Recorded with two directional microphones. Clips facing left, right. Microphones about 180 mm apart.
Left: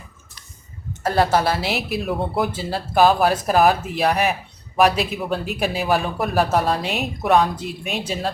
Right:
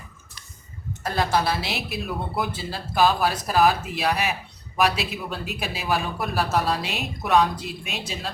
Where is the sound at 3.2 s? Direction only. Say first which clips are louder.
Left 4 dB; 45° left (ahead or behind).